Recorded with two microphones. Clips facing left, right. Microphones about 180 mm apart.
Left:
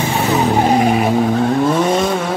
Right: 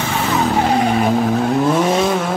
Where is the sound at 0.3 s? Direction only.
15° left (ahead or behind).